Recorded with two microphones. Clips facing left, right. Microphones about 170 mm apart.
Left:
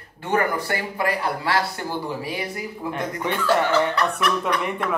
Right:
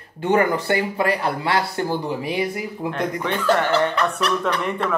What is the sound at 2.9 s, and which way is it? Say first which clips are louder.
Speech: right 1 dB; 15° left (ahead or behind).